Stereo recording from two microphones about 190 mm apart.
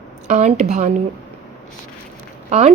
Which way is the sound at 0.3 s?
40° right (ahead or behind).